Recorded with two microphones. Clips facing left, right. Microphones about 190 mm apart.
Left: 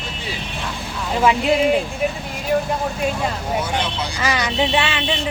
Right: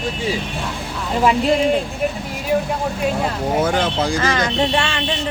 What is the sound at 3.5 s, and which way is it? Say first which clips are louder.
Speech: right 8 dB; 50° right (ahead or behind).